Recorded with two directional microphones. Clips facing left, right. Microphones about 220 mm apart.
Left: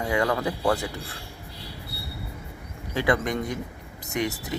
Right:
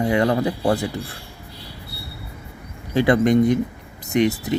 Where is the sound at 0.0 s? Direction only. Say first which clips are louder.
Right 6 dB; 25° right (ahead or behind).